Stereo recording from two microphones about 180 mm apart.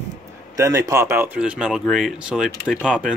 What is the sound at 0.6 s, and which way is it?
A man's voice, 20° right (ahead or behind).